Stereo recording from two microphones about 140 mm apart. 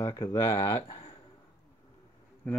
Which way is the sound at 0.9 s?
40° left (ahead or behind).